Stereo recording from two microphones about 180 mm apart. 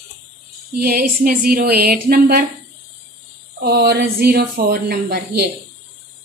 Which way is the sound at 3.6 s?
65° right (ahead or behind).